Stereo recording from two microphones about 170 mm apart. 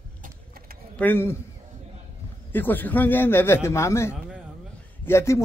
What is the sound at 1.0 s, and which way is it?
Speech, 10° left (ahead or behind).